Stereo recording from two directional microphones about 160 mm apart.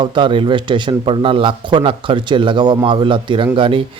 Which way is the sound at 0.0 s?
30° right (ahead or behind).